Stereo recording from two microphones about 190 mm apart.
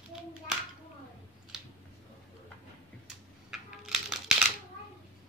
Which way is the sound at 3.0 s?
Centre (ahead or behind).